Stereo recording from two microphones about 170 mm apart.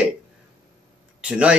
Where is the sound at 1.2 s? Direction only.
5° right (ahead or behind).